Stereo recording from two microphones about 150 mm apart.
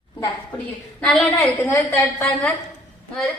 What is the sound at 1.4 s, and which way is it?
A woman's voice, 15° left (ahead or behind).